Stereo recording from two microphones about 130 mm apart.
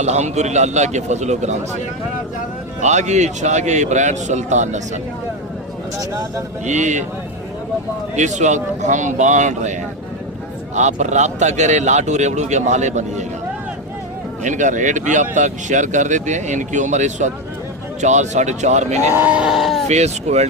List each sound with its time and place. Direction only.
0.0 s speech: 60° right (ahead or behind)
2.8 s speech: 60° right (ahead or behind)
6.7 s speech: 65° right (ahead or behind)
8.1 s speech: 65° right (ahead or behind)
10.8 s speech: 65° right (ahead or behind)
14.4 s speech: 70° right (ahead or behind)
19.1 s speech: 10° right (ahead or behind)
19.9 s speech: 60° right (ahead or behind)